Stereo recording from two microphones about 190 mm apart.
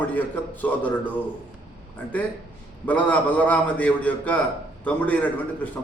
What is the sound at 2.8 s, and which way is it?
A man's voice, 10° left (ahead or behind).